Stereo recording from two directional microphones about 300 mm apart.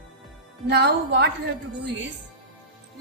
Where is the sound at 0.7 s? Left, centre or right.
Right.